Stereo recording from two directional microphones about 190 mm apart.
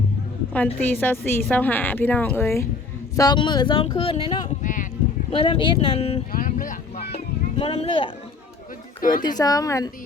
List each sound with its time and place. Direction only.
0.8 s a woman's voice: 10° left (ahead or behind); by 4.4 s 25° left (ahead or behind)
4.4 s clip-clop: 45° left (ahead or behind)
5.3 s speech: 25° left (ahead or behind)
6.3 s a sound: 45° left (ahead or behind); by 8.1 s 30° left (ahead or behind)
9.0 s speech: 45° left (ahead or behind)
9.4 s speech: 20° left (ahead or behind)